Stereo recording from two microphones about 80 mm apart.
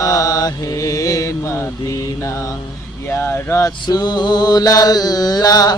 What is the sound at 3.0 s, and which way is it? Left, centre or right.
Speech, left.